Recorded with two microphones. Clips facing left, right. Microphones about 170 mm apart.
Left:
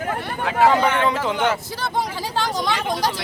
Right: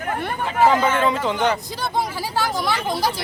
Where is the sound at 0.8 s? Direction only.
65° left (ahead or behind).